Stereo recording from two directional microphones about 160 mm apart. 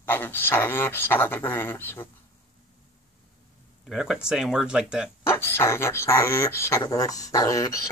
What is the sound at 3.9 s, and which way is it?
Speech, centre (ahead or behind).